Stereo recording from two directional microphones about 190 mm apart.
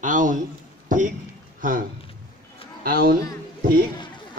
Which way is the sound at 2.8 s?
50° right (ahead or behind).